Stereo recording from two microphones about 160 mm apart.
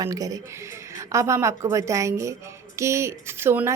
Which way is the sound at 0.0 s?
20° right (ahead or behind).